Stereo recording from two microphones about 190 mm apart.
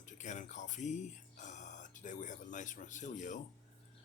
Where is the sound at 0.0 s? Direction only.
40° left (ahead or behind).